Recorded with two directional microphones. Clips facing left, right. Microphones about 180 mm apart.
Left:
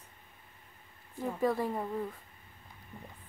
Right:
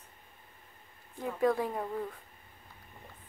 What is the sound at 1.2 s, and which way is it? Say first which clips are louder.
Speech: right 1 dB; centre (ahead or behind).